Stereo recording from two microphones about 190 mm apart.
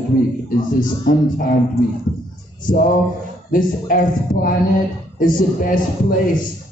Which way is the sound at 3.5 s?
45° left (ahead or behind).